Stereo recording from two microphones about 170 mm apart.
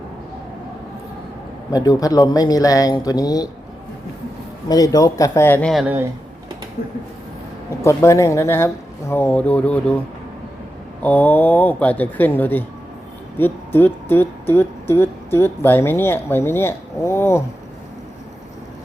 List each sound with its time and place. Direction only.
1.7 s speech: 20° left (ahead or behind)
4.7 s speech: 20° left (ahead or behind)
7.9 s speech: 15° left (ahead or behind)
11.0 s speech: 10° left (ahead or behind)